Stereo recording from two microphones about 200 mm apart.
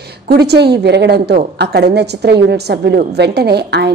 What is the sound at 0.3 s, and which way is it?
A woman's voice, 55° right (ahead or behind).